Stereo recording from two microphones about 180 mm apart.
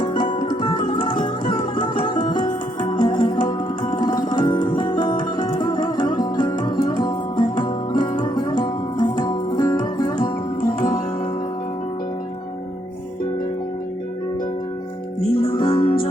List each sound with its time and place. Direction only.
0.0 s music: 30° left (ahead or behind)
10.6 s music: 50° left (ahead or behind)
15.4 s music: 25° left (ahead or behind)